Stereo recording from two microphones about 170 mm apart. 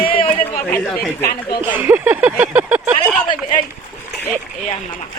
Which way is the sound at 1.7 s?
10° right (ahead or behind).